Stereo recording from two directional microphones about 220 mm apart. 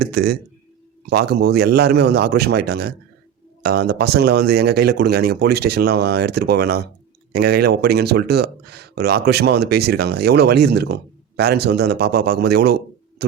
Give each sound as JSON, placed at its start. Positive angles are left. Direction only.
{"t": 0.0, "sound": "speech", "side_deg": -45}